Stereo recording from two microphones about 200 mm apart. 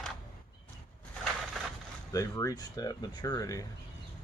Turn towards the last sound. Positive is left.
turn(degrees=15)  # may be behind; listen again after turning